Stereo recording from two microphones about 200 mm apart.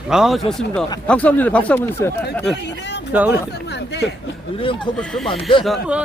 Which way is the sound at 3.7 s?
60° left (ahead or behind).